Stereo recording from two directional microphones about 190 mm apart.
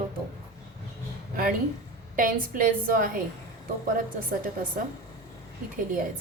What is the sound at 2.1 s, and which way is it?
Speech, 45° right (ahead or behind).